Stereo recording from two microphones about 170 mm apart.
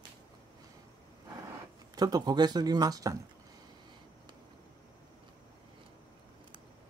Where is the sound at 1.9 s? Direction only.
25° right (ahead or behind).